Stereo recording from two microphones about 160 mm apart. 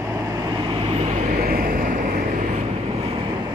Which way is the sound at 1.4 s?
65° right (ahead or behind).